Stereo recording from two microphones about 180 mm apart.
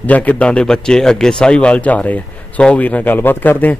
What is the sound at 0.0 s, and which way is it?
A man's voice, 10° left (ahead or behind).